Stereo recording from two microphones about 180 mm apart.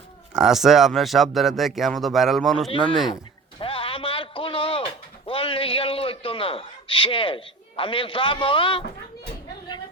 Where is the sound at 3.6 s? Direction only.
30° left (ahead or behind).